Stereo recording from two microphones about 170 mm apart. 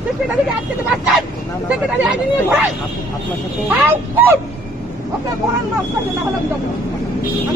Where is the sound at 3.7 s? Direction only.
10° right (ahead or behind).